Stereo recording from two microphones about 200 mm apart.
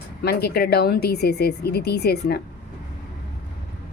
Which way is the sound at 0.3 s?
50° left (ahead or behind).